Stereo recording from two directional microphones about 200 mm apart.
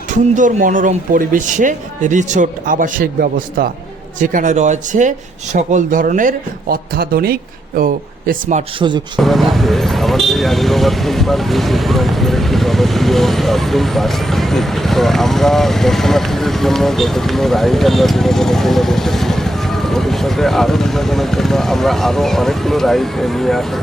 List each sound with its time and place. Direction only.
0.1 s speech: 40° right (ahead or behind)
9.2 s speech: centre (ahead or behind)